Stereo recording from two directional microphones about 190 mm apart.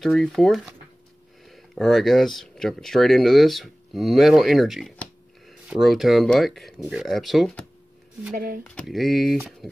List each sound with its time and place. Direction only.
0.0 s speech: centre (ahead or behind)
8.6 s speech: 5° left (ahead or behind)